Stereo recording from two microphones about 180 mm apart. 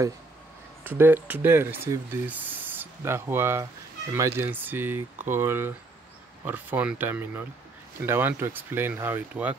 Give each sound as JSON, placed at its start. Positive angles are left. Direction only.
{"t": 0.8, "sound": "speech", "side_deg": -10}